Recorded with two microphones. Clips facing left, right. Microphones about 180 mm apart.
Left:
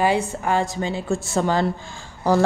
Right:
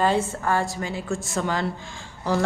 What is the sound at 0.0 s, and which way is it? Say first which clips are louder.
A woman's voice: left 2 dB; 15° left (ahead or behind).